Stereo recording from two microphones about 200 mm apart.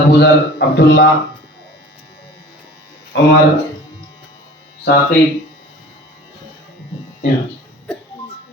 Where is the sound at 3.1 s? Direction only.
60° left (ahead or behind).